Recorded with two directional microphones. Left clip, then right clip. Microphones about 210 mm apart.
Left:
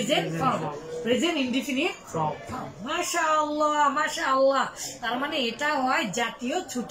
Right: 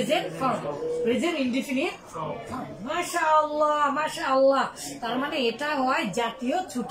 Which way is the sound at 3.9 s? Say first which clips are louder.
Even; 5° right (ahead or behind).